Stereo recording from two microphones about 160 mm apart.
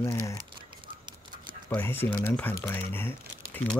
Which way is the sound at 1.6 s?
15° left (ahead or behind).